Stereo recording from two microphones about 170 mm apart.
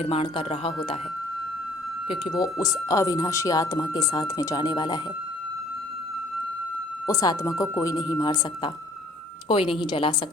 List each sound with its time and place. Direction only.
0.0 s speech: 35° left (ahead or behind)
2.0 s speech: 25° left (ahead or behind)
7.1 s speech: 20° left (ahead or behind)